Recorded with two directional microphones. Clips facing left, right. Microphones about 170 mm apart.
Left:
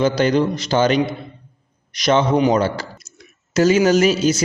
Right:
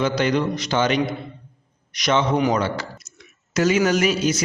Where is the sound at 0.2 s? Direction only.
30° left (ahead or behind).